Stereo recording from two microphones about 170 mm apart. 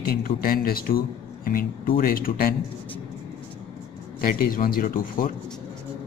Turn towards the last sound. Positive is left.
turn(degrees=55)  # may be behind; listen again after turning